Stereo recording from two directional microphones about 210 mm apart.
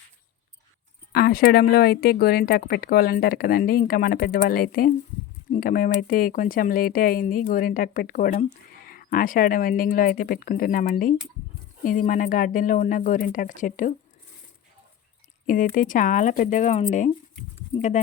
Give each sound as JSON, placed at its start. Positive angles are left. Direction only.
{"t": 1.1, "sound": "speech", "side_deg": 45}
{"t": 15.4, "sound": "speech", "side_deg": 40}